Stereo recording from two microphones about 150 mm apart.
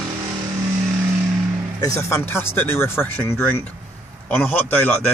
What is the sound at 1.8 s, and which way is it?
Speech, 20° left (ahead or behind).